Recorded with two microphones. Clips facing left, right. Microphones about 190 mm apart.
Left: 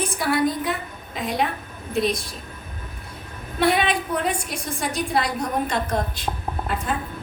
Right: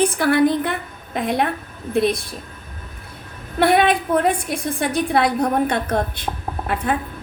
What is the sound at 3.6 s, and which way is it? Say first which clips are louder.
A woman's voice: right 5 dB; 55° right (ahead or behind).